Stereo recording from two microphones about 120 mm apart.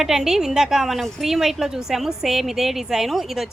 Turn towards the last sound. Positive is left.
turn(degrees=-5)  # may be behind; listen again after turning